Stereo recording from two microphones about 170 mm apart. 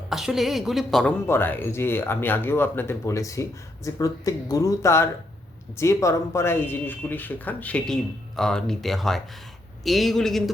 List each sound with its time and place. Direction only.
0.1 s a woman's voice: centre (ahead or behind)